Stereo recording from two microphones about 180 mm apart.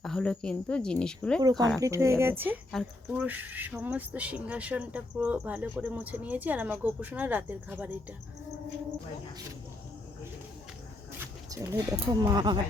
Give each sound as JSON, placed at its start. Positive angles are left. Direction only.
{"t": 0.0, "sound": "speech", "side_deg": 5}
{"t": 1.4, "sound": "speech", "side_deg": -20}
{"t": 11.2, "sound": "speech", "side_deg": -20}